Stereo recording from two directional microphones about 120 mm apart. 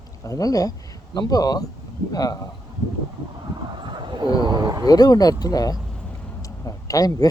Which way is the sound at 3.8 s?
40° right (ahead or behind).